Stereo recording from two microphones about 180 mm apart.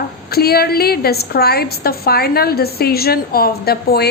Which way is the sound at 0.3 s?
60° left (ahead or behind).